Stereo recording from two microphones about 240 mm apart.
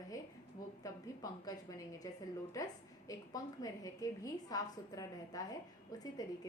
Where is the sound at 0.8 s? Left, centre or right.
Centre.